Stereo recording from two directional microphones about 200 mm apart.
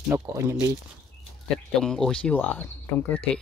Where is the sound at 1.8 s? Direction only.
5° left (ahead or behind).